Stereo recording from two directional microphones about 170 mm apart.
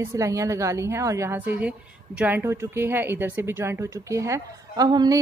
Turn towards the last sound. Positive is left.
turn(degrees=-25)  # may be behind; listen again after turning